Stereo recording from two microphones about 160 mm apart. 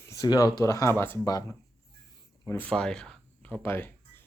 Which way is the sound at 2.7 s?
5° left (ahead or behind).